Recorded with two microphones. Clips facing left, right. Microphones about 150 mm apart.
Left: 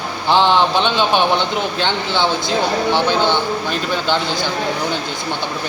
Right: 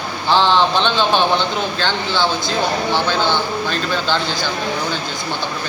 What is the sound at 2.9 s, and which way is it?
Speech, 15° left (ahead or behind).